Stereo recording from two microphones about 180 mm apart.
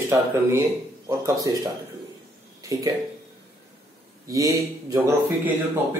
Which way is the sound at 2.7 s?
20° right (ahead or behind).